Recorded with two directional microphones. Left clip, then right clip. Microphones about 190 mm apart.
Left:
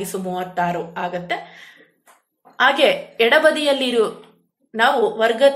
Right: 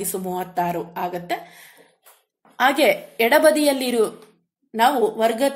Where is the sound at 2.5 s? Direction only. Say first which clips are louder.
Left 2 dB; 40° right (ahead or behind).